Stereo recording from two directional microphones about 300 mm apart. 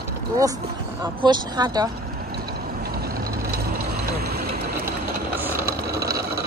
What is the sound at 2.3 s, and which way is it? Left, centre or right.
Vehicle, right.